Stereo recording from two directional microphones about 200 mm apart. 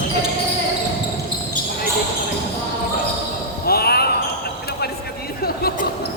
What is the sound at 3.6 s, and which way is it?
Basketball bounce, 50° left (ahead or behind).